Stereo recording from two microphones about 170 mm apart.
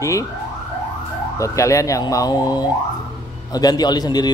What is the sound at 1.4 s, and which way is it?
Speech, 20° left (ahead or behind).